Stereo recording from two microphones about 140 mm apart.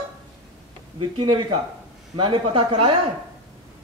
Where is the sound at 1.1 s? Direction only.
40° right (ahead or behind).